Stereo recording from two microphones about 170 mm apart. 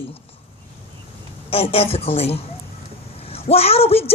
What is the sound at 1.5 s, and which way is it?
Speech, 35° left (ahead or behind).